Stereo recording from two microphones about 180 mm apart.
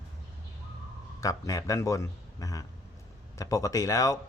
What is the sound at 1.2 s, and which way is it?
A man's voice, 20° left (ahead or behind).